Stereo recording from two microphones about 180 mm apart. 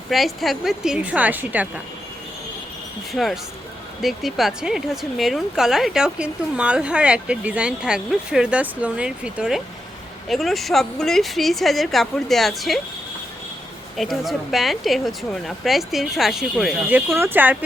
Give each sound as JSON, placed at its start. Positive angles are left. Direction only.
{"t": 0.1, "sound": "speech", "side_deg": 0}
{"t": 3.1, "sound": "speech", "side_deg": 0}
{"t": 13.9, "sound": "speech", "side_deg": 0}
{"t": 17.1, "sound": "speech", "side_deg": -15}